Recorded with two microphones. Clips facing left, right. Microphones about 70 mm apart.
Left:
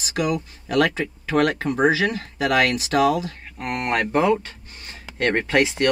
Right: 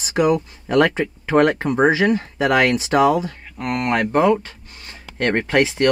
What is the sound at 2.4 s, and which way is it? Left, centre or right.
Speech, right.